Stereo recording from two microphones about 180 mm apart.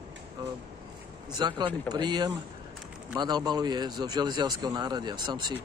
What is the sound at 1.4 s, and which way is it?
Speech, 25° right (ahead or behind).